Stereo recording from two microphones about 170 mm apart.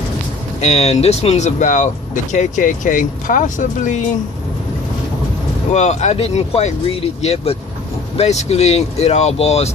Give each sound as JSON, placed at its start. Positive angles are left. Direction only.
{"t": 0.6, "sound": "speech", "side_deg": 40}
{"t": 5.7, "sound": "speech", "side_deg": 40}